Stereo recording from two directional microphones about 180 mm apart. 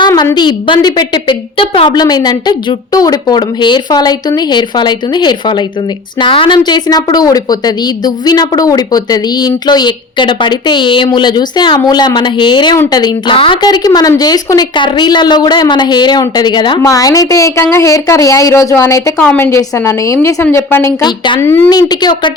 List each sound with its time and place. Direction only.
0.0 s a woman's voice: 20° left (ahead or behind)